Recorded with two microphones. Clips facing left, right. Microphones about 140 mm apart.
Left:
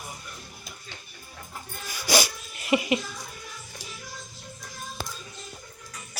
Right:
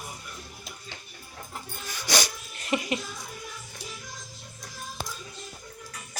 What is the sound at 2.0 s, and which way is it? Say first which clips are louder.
Dog: left 4 dB; 5° left (ahead or behind).